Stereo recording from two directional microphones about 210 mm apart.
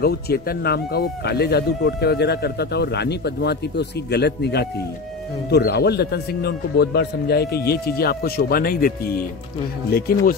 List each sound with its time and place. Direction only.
0.0 s speech: 45° left (ahead or behind)